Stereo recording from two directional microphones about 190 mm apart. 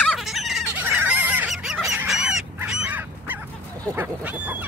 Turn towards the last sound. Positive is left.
turn(degrees=-10)  # may be behind; listen again after turning